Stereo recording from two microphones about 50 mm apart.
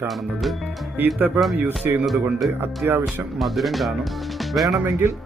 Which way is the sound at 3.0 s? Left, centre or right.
Centre.